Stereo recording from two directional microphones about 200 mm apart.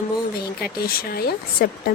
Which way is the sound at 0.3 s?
50° left (ahead or behind).